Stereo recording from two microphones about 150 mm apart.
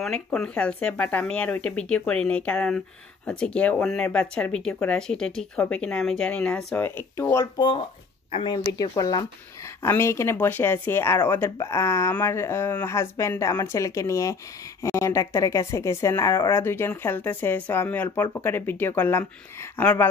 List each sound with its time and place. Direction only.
0.0 s speech: 5° left (ahead or behind)
7.5 s speech: 30° left (ahead or behind)
8.9 s speech: 25° left (ahead or behind)